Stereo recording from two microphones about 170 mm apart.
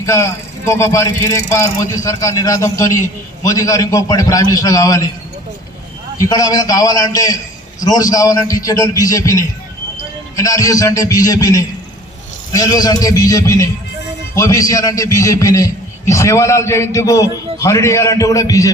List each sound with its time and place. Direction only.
0.0 s a man's voice: 20° left (ahead or behind)
6.1 s a man's voice: 20° left (ahead or behind)